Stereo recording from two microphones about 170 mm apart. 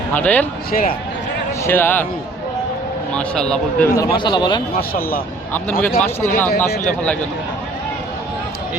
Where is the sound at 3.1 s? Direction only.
5° left (ahead or behind).